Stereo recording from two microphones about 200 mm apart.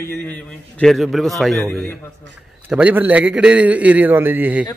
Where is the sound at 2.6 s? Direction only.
5° right (ahead or behind).